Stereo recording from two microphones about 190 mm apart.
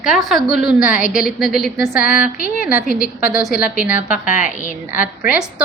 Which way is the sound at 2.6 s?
5° right (ahead or behind).